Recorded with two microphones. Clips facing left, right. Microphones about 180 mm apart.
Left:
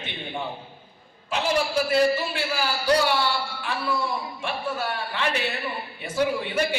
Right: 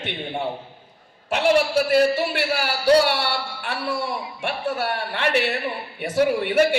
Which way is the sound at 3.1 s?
65° right (ahead or behind).